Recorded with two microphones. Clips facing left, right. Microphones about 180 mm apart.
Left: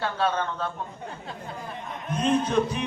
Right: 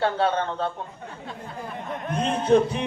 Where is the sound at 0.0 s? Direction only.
25° right (ahead or behind).